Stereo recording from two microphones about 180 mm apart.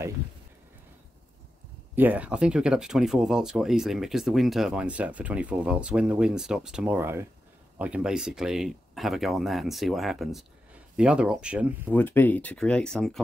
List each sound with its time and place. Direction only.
2.0 s speech: 10° right (ahead or behind)
11.9 s speech: 10° left (ahead or behind)